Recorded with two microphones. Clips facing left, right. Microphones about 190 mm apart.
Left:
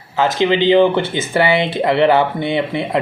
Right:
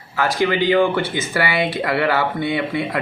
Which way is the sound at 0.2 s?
20° left (ahead or behind).